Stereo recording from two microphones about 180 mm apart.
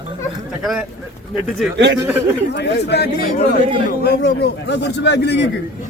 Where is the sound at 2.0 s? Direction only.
10° right (ahead or behind).